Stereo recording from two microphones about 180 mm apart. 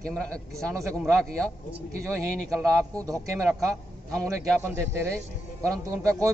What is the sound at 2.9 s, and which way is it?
Speech, 20° right (ahead or behind).